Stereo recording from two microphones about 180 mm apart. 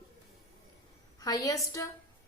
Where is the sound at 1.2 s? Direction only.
20° left (ahead or behind).